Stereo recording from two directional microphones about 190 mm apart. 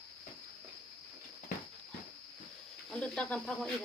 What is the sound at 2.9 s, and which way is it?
Speech, 5° left (ahead or behind).